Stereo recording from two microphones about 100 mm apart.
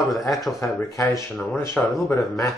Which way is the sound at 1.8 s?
10° left (ahead or behind).